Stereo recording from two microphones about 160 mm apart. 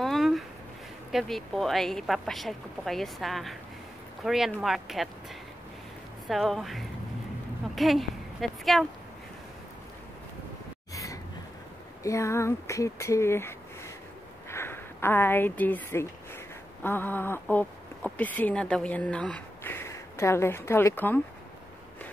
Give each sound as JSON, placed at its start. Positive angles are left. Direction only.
{"t": 0.0, "sound": "a sound", "side_deg": 0}
{"t": 1.1, "sound": "a woman's voice", "side_deg": 0}
{"t": 6.2, "sound": "a woman's voice", "side_deg": 0}
{"t": 12.0, "sound": "a woman's voice", "side_deg": 20}